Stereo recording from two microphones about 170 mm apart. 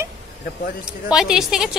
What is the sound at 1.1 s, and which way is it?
Speech, 5° right (ahead or behind).